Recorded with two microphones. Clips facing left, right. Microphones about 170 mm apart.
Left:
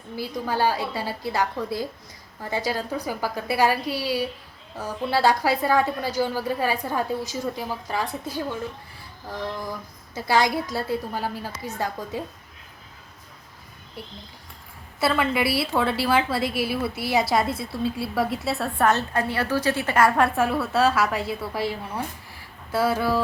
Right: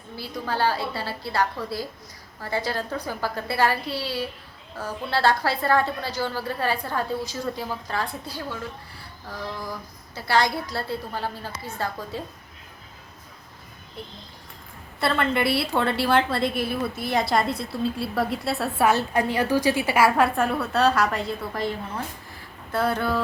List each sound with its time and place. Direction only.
0.2 s a woman's voice: 15° left (ahead or behind)
10.2 s a woman's voice: 15° left (ahead or behind)
15.0 s a woman's voice: 5° left (ahead or behind)